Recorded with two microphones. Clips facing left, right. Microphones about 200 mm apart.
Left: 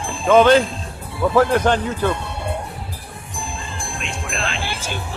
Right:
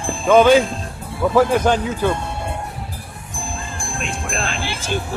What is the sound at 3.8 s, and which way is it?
Music, 45° right (ahead or behind).